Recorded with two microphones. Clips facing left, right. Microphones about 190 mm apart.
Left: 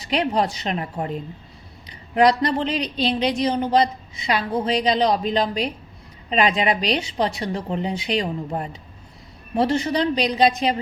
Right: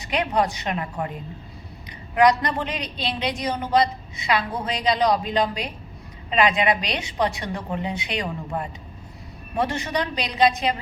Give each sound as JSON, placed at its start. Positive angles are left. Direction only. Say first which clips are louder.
{"t": 0.0, "sound": "a woman's voice", "louder": "left 1 dB", "side_deg": 35}